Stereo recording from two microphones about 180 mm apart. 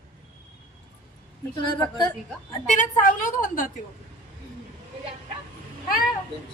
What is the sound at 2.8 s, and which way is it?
Speech, 45° left (ahead or behind).